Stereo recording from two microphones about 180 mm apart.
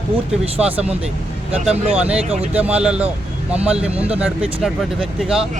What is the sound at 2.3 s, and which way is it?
Speech, 35° right (ahead or behind).